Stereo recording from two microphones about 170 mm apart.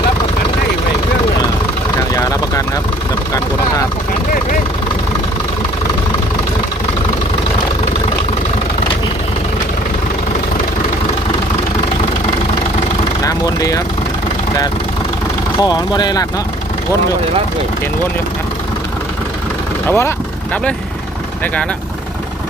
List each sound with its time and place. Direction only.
2.1 s vehicle: 20° left (ahead or behind)
13.2 s vehicle: 20° left (ahead or behind)
15.6 s speech: 25° left (ahead or behind)
19.9 s speech: 15° left (ahead or behind)